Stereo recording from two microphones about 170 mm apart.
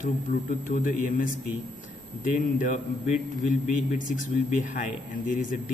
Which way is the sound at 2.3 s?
50° left (ahead or behind).